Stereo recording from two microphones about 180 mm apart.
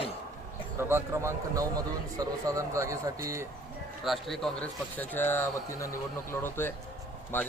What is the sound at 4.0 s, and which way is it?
Speech, centre (ahead or behind).